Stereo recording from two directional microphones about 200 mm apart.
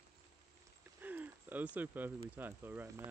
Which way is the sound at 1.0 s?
10° right (ahead or behind).